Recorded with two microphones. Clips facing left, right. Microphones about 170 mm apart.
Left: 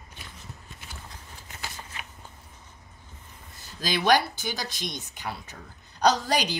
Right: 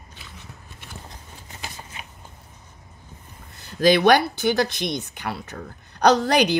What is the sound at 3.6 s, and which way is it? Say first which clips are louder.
Speech: right 12 dB; 60° right (ahead or behind).